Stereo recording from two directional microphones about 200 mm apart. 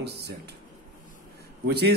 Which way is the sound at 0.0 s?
55° right (ahead or behind).